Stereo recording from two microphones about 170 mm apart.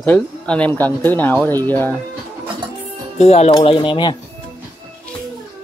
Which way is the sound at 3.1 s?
40° left (ahead or behind).